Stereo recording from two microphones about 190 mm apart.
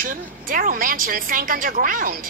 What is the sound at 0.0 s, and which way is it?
A woman's voice, 45° right (ahead or behind).